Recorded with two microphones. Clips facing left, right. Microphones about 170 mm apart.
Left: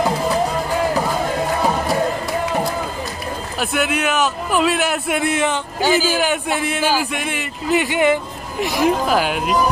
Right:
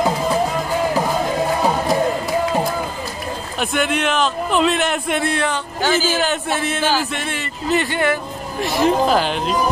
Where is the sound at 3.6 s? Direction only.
5° left (ahead or behind).